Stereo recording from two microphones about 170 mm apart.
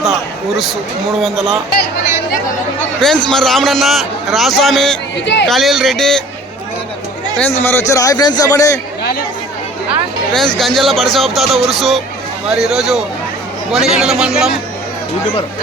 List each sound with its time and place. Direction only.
1.2 s a man's voice: centre (ahead or behind)
3.0 s a man's voice: 5° left (ahead or behind)
5.2 s speech: 90° left
5.5 s a man's voice: centre (ahead or behind)
7.6 s a man's voice: 15° left (ahead or behind)
10.3 s a man's voice: centre (ahead or behind)